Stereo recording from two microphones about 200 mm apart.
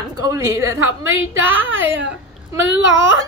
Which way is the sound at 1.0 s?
80° right.